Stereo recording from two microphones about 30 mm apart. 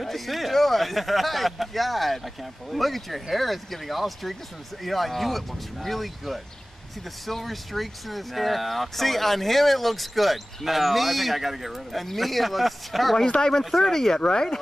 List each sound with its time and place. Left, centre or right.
0.0 s speech: centre
13.4 s speech: centre
13.7 s speech: centre
13.9 s speech: centre